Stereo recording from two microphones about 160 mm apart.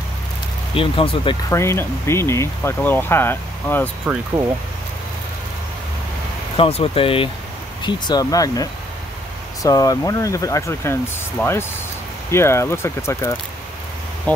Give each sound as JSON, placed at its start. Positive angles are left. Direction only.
{"t": 0.7, "sound": "speech", "side_deg": 35}
{"t": 1.5, "sound": "speech", "side_deg": 15}
{"t": 6.5, "sound": "speech", "side_deg": 35}